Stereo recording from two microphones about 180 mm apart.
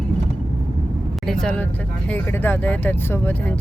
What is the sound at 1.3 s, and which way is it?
Speech, 5° left (ahead or behind).